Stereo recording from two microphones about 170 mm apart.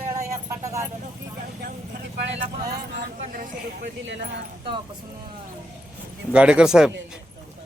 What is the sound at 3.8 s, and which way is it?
Speech, 90° right.